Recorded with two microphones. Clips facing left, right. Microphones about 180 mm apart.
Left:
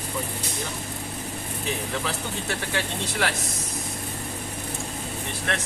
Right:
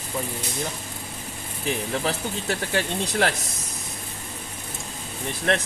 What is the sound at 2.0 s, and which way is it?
Speech, 40° right (ahead or behind).